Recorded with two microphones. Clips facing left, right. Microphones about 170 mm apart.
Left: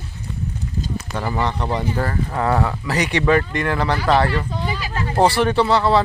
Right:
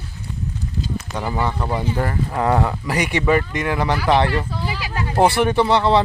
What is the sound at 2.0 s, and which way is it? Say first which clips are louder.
Speech: right 1 dB; 15° right (ahead or behind).